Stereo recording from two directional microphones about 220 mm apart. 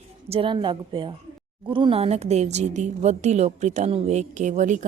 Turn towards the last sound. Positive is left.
turn(degrees=-35)  # may be behind; listen again after turning